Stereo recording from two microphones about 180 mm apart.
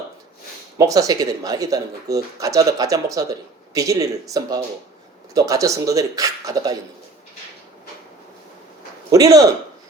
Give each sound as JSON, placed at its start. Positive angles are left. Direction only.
{"t": 0.8, "sound": "speech", "side_deg": -20}
{"t": 9.1, "sound": "speech", "side_deg": -20}